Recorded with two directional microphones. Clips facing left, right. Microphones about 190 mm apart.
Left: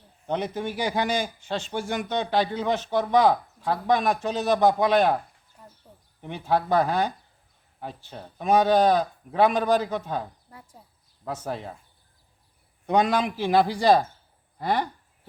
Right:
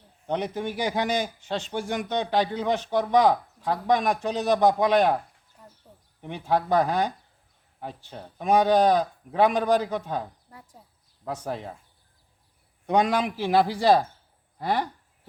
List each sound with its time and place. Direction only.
0.3 s a man's voice: 15° right (ahead or behind)
5.6 s a sound: 5° left (ahead or behind)
6.2 s a man's voice: 15° right (ahead or behind)
11.3 s a man's voice: 15° right (ahead or behind)
12.9 s a man's voice: 10° right (ahead or behind)